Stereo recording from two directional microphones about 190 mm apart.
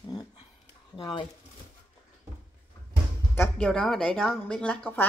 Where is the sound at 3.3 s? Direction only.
10° left (ahead or behind).